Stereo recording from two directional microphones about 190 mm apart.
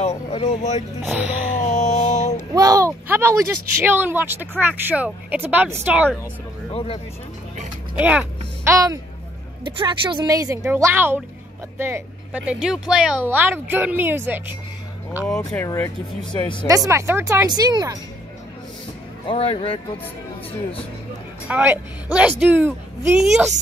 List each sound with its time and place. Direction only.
0.0 s speech: 35° left (ahead or behind)
1.0 s speech: 5° right (ahead or behind)
1.6 s a sound: 40° left (ahead or behind)
2.5 s a sound: 20° right (ahead or behind)
3.8 s speech: 10° right (ahead or behind)
6.7 s speech: 30° left (ahead or behind)
8.0 s a woman's voice: 10° right (ahead or behind)
15.2 s speech: 5° left (ahead or behind)
15.6 s speech: 15° left (ahead or behind)
16.3 s speech: 25° left (ahead or behind)
16.6 s speech: 15° right (ahead or behind)
19.2 s speech: 30° left (ahead or behind)
21.5 s speech: 5° right (ahead or behind)